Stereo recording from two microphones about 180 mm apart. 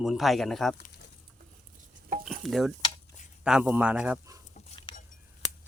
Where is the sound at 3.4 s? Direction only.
5° right (ahead or behind).